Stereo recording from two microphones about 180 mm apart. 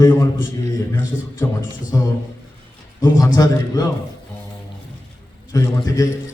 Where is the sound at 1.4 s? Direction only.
20° left (ahead or behind).